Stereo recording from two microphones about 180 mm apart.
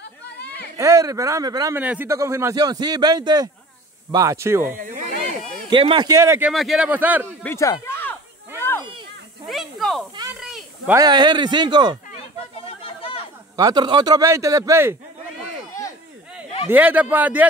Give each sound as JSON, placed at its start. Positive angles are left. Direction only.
{"t": 0.0, "sound": "a sound", "side_deg": 65}
{"t": 0.7, "sound": "a man's voice", "side_deg": -15}
{"t": 1.8, "sound": "a man's voice", "side_deg": -10}
{"t": 5.7, "sound": "speech", "side_deg": -25}
{"t": 6.5, "sound": "a man's voice", "side_deg": 0}
{"t": 7.4, "sound": "speech", "side_deg": 15}
{"t": 8.5, "sound": "a sound", "side_deg": 15}
{"t": 9.5, "sound": "snake", "side_deg": 0}
{"t": 10.4, "sound": "a sound", "side_deg": 0}
{"t": 11.0, "sound": "speech", "side_deg": -25}
{"t": 12.8, "sound": "a sound", "side_deg": 30}
{"t": 13.6, "sound": "speech", "side_deg": -20}
{"t": 16.6, "sound": "a man's voice", "side_deg": -10}